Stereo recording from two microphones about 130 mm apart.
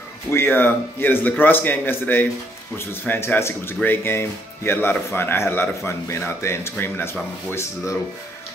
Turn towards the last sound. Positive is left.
turn(degrees=20)  # may be behind; listen again after turning